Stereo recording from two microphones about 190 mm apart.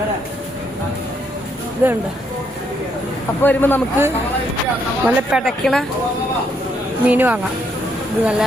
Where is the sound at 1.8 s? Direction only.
10° right (ahead or behind).